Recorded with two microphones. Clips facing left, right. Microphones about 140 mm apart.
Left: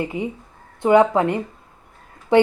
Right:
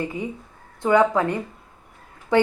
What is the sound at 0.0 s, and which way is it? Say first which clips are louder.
A woman's voice: left 3 dB; 20° left (ahead or behind).